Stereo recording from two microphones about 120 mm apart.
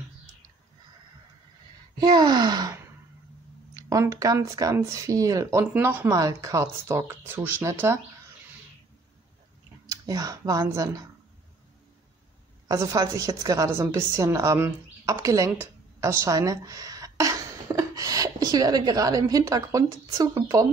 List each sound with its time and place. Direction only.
2.0 s gasp: 35° right (ahead or behind)
3.7 s speech: 30° right (ahead or behind)
6.1 s speech: 30° right (ahead or behind)
9.8 s speech: 30° right (ahead or behind)
12.6 s a woman's voice: 30° right (ahead or behind)